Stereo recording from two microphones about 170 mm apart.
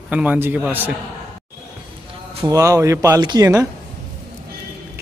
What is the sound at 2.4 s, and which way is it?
Speech, 20° right (ahead or behind).